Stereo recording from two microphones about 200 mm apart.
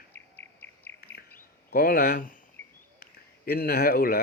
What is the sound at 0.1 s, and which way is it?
Cricket, 10° left (ahead or behind).